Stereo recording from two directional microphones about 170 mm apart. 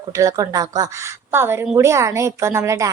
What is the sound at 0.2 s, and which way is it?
A woman's voice, 20° right (ahead or behind).